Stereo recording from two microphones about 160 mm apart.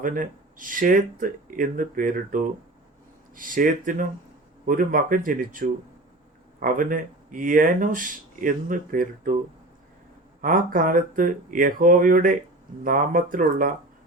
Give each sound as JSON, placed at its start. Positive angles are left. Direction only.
{"t": 0.0, "sound": "speech", "side_deg": -55}
{"t": 10.4, "sound": "speech", "side_deg": -60}